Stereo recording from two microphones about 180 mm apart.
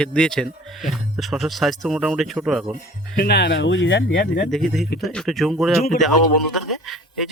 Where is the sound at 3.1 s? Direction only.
65° left (ahead or behind).